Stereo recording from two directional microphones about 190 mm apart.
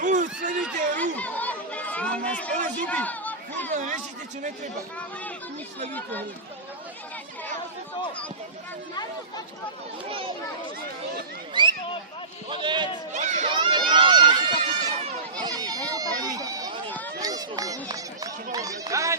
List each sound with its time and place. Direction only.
0.0 s a sound: 40° right (ahead or behind)
0.9 s chatter: 10° left (ahead or behind)
3.7 s speech: 40° right (ahead or behind)
5.9 s speech: 10° left (ahead or behind)
11.6 s a sound: 25° right (ahead or behind)
12.5 s a man's voice: 25° right (ahead or behind)
13.1 s speech: 40° right (ahead or behind)
13.5 s a sound: 25° right (ahead or behind)
17.2 s speech: 20° right (ahead or behind)